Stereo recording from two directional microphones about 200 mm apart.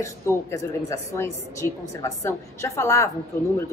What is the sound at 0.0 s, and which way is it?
A woman's voice, 15° left (ahead or behind).